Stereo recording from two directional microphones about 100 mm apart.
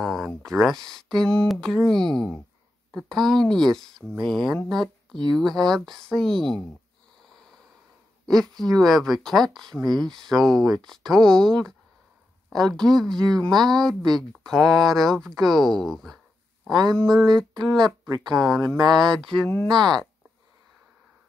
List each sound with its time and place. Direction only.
0.0 s a sound: centre (ahead or behind)
0.3 s speech: 5° left (ahead or behind)
8.3 s speech: centre (ahead or behind)
16.9 s a sound: 5° left (ahead or behind)
17.6 s speech: 5° left (ahead or behind)
18.8 s speech: 45° right (ahead or behind)
19.0 s speech: 5° left (ahead or behind)